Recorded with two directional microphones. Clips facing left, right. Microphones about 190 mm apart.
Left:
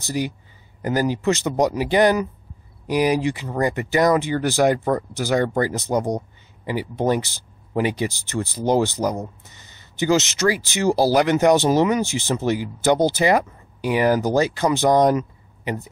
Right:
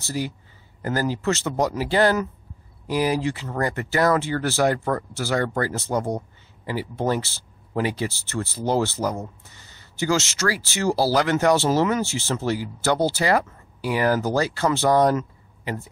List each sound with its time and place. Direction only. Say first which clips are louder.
0.0 s speech: left 3 dB; 15° left (ahead or behind)